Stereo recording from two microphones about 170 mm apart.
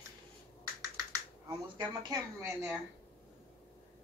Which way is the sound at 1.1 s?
25° right (ahead or behind).